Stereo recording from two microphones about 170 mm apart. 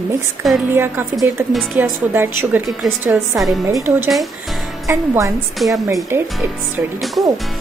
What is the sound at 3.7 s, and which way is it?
A woman's voice, 15° right (ahead or behind).